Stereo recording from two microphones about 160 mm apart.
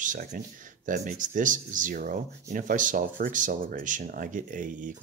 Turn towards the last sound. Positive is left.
turn(degrees=-55)  # may be behind; listen again after turning